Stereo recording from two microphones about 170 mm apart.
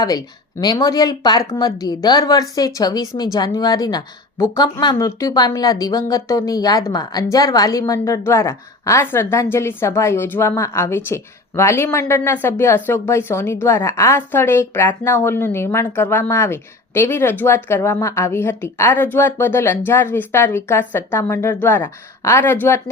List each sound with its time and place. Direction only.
0.0 s a woman's voice: 20° left (ahead or behind)